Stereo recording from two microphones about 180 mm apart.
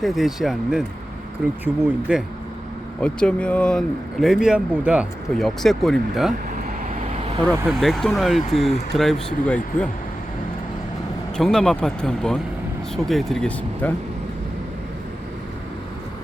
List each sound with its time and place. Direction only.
0.0 s speech: centre (ahead or behind)
3.0 s speech: 5° left (ahead or behind)
7.0 s vehicle: 35° right (ahead or behind)
7.7 s speech: centre (ahead or behind)
11.3 s speech: 5° left (ahead or behind)